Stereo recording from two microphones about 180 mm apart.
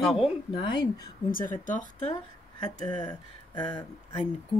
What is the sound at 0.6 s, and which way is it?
Speech, 25° left (ahead or behind).